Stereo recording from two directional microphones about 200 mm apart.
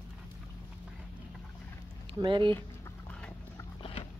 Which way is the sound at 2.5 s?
10° left (ahead or behind).